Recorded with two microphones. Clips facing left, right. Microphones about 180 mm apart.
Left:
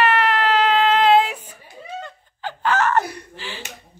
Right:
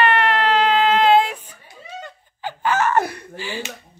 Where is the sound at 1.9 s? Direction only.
10° right (ahead or behind).